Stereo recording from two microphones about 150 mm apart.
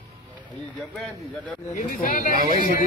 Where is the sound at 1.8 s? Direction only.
65° left (ahead or behind).